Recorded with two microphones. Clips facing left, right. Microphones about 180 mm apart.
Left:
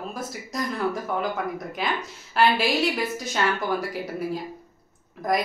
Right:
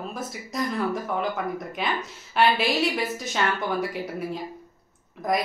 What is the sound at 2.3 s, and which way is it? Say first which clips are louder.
Speech: left 1 dB; centre (ahead or behind).